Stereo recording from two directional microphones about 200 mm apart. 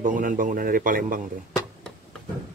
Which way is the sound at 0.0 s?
40° right (ahead or behind).